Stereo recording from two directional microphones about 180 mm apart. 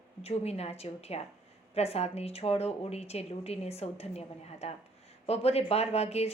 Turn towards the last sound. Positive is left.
turn(degrees=35)  # may be behind; listen again after turning